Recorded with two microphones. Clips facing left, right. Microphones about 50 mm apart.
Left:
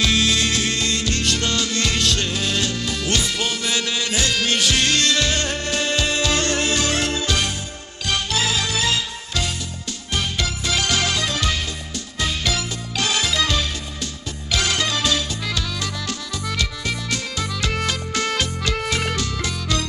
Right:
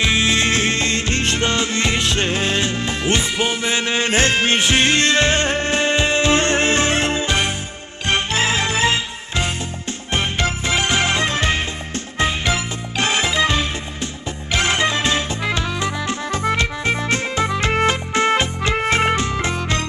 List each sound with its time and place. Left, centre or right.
0.0 s music: right